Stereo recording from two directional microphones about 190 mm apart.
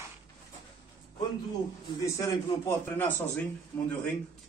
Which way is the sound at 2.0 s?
15° left (ahead or behind).